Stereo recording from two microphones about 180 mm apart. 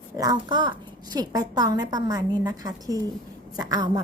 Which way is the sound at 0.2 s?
25° right (ahead or behind).